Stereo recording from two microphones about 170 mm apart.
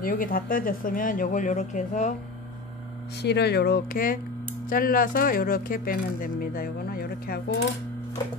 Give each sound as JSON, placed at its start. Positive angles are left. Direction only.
{"t": 0.0, "sound": "speech", "side_deg": 55}
{"t": 3.2, "sound": "speech", "side_deg": 80}